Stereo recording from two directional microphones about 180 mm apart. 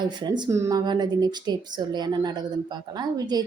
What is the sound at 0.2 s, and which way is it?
Speech, 25° right (ahead or behind).